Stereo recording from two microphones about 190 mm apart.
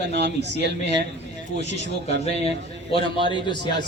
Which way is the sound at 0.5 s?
65° right (ahead or behind).